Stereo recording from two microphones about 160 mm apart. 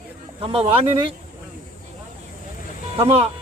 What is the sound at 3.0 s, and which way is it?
Speech, 40° right (ahead or behind).